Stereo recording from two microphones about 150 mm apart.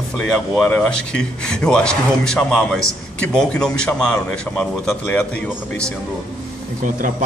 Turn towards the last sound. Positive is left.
turn(degrees=-55)  # may be behind; listen again after turning